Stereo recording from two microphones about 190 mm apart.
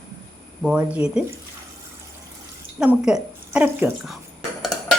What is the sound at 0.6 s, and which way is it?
Speech, 5° right (ahead or behind).